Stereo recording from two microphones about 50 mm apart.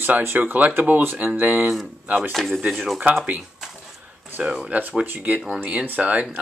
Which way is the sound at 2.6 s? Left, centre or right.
Centre.